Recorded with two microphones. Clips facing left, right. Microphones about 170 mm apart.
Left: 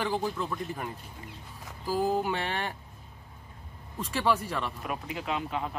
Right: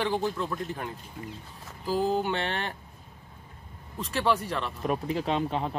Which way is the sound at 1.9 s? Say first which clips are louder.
Right 1 dB; 10° left (ahead or behind).